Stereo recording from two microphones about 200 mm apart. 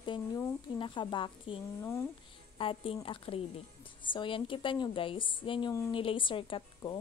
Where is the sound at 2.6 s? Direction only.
25° left (ahead or behind).